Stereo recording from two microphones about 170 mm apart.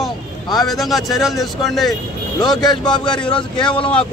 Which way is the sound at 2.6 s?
25° left (ahead or behind).